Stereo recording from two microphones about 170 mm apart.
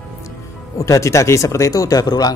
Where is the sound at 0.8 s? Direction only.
20° left (ahead or behind).